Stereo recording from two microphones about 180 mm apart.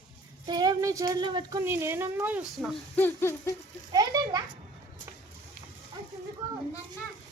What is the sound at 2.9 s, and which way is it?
Speech, 15° left (ahead or behind).